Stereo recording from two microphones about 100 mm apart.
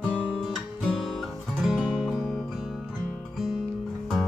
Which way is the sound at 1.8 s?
10° right (ahead or behind).